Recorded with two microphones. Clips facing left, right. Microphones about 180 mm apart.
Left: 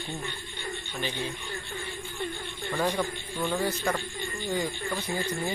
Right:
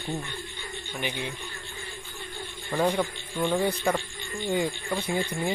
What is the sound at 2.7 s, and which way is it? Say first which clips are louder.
Speech: right 3 dB; 10° right (ahead or behind).